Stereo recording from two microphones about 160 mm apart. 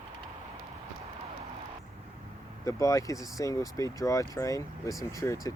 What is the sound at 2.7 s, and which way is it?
Speech, 20° left (ahead or behind).